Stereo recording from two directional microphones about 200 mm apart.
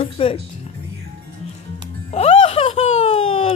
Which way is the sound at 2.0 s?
30° left (ahead or behind).